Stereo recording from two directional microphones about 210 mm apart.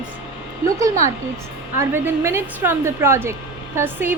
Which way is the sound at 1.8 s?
10° right (ahead or behind).